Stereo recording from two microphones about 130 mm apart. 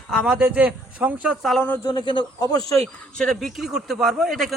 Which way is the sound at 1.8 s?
35° left (ahead or behind).